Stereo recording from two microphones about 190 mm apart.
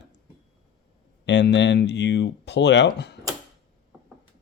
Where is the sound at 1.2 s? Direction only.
70° left (ahead or behind).